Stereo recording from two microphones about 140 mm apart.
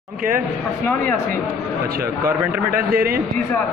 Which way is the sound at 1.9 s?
90° right.